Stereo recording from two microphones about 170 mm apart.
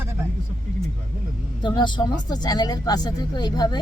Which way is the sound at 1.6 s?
25° left (ahead or behind).